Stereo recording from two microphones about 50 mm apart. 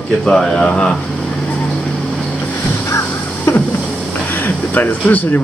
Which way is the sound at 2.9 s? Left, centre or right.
Left.